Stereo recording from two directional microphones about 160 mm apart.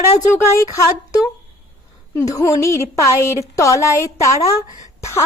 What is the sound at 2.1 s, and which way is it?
A woman's voice, 20° left (ahead or behind).